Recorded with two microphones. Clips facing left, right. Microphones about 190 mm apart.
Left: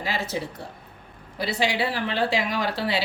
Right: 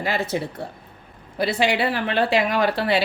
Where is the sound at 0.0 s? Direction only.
55° right (ahead or behind).